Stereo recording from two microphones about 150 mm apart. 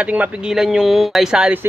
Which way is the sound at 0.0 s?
10° right (ahead or behind).